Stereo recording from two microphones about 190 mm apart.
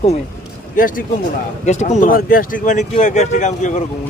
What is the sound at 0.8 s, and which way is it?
Speech, 45° left (ahead or behind).